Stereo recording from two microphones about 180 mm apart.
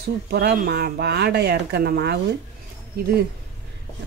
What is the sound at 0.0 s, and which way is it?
Speech, 65° right (ahead or behind).